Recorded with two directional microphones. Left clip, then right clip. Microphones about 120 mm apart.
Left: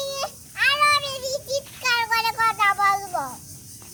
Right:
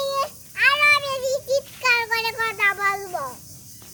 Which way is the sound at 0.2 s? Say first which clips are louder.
Right 1 dB; 25° right (ahead or behind).